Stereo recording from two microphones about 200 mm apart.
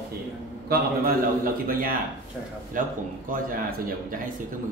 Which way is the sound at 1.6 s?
45° right (ahead or behind).